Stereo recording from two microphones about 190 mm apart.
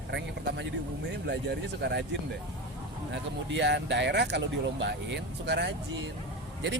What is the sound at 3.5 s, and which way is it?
Speech, 70° right (ahead or behind).